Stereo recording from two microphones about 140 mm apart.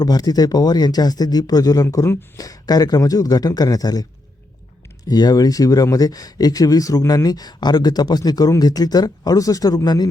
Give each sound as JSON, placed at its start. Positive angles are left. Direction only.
{"t": 0.0, "sound": "speech", "side_deg": 30}
{"t": 5.0, "sound": "speech", "side_deg": 30}